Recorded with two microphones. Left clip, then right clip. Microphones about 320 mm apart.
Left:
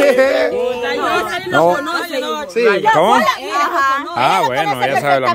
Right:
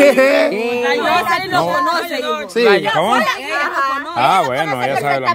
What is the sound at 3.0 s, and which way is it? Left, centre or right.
Speech, centre.